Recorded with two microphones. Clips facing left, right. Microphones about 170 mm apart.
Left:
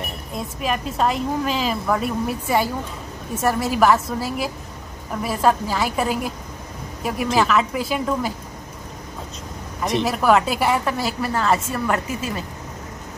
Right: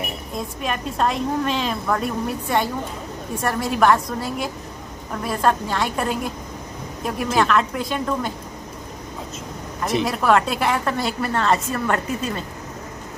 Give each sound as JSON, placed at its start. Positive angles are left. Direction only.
{"t": 0.6, "sound": "a woman's voice", "side_deg": 0}
{"t": 9.8, "sound": "a woman's voice", "side_deg": 0}